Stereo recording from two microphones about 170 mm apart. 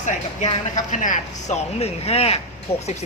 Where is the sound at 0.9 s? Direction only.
45° left (ahead or behind).